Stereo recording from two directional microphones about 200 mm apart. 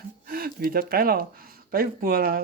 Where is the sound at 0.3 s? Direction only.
45° right (ahead or behind).